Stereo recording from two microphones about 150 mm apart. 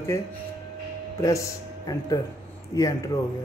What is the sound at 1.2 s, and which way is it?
A man's voice, 20° left (ahead or behind).